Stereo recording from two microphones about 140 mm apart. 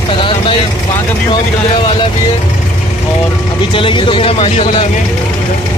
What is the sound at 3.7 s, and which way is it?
Speech, 35° left (ahead or behind).